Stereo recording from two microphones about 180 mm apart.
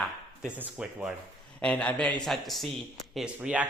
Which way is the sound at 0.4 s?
5° right (ahead or behind).